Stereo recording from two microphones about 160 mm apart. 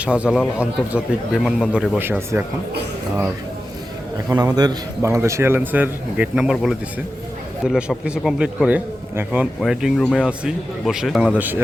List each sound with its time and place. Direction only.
0.0 s a man's voice: 5° right (ahead or behind)
2.0 s a man's voice: 15° right (ahead or behind)
4.3 s a man's voice: 25° right (ahead or behind); by 10.2 s 5° left (ahead or behind)
10.2 s a man's voice: 5° right (ahead or behind)